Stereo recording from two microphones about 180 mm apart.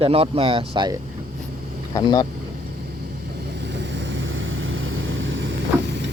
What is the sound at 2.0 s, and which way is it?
Speech, 20° left (ahead or behind).